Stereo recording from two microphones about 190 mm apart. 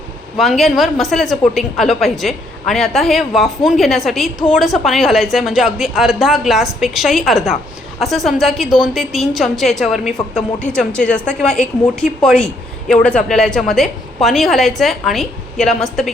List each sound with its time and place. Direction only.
0.3 s a woman's voice: centre (ahead or behind)